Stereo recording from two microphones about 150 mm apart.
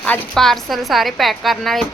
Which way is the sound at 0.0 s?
10° left (ahead or behind).